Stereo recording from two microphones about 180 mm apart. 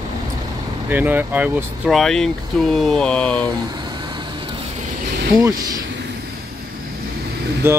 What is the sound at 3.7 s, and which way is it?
Vehicle, 25° right (ahead or behind).